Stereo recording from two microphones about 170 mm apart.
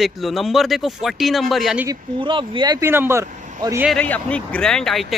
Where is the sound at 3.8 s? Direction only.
5° left (ahead or behind).